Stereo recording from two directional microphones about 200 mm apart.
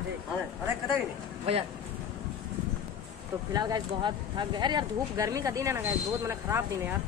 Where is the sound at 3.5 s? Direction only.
20° right (ahead or behind).